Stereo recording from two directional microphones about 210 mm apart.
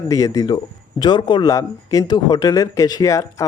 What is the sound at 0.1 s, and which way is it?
A man's voice, 15° left (ahead or behind).